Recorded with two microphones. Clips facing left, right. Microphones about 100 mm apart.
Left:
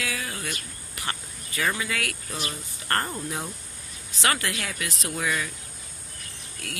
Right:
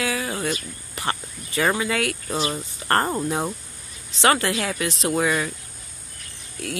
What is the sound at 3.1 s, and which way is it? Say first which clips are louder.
Speech: right 8 dB; 45° right (ahead or behind).